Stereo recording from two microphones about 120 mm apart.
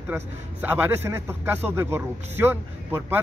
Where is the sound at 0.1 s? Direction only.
15° right (ahead or behind).